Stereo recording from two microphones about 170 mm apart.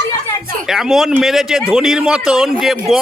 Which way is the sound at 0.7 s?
Centre (ahead or behind).